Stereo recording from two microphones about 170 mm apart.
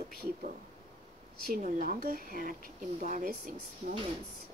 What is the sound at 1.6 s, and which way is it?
Speech, 50° right (ahead or behind).